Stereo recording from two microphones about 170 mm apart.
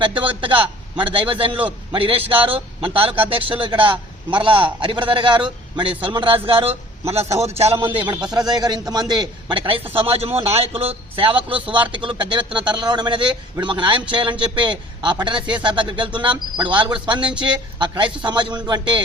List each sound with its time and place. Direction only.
0.0 s a man's voice: 30° right (ahead or behind)